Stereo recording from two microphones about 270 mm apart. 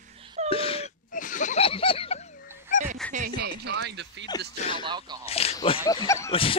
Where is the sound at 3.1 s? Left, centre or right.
Right.